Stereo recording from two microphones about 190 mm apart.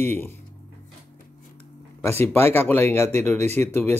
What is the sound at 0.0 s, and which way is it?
Speech, 10° left (ahead or behind).